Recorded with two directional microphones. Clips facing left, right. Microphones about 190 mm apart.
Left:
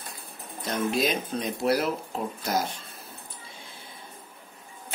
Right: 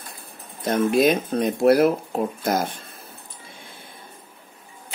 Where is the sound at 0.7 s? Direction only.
55° right (ahead or behind).